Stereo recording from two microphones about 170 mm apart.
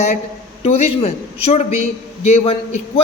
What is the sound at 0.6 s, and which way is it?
Speech, 40° left (ahead or behind).